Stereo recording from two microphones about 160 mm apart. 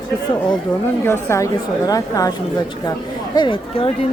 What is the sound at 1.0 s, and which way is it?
A woman's voice, 15° left (ahead or behind).